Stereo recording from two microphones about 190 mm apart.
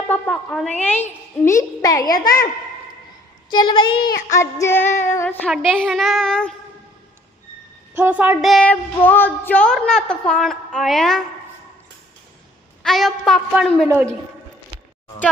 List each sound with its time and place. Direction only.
0.1 s a woman's voice: centre (ahead or behind); by 2.0 s 15° left (ahead or behind)
2.0 s child singing: 50° left (ahead or behind)
3.5 s speech: 25° left (ahead or behind)
3.9 s child singing: 55° left (ahead or behind)
4.4 s a woman's voice: 15° left (ahead or behind)
5.5 s a woman's voice: centre (ahead or behind)
7.9 s a woman's voice: 10° right (ahead or behind)
12.8 s a woman's voice: centre (ahead or behind)
13.8 s a woman's voice: 10° right (ahead or behind)